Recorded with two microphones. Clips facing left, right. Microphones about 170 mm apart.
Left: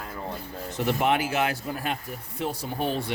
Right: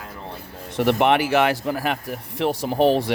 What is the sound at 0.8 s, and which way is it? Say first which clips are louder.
Speech: right 6 dB; 70° right (ahead or behind).